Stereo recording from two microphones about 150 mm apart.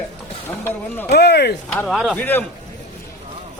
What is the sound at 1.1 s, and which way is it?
Speech, 90° left.